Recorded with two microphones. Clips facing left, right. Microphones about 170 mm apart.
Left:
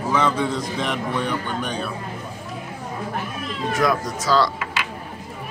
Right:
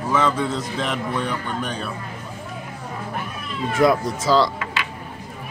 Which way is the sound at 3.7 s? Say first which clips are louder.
Right 4 dB; 25° right (ahead or behind).